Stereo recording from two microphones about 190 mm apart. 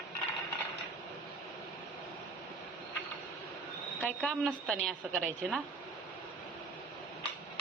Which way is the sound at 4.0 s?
5° left (ahead or behind).